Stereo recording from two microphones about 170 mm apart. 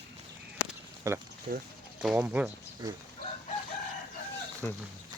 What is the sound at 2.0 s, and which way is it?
Speech, 5° right (ahead or behind).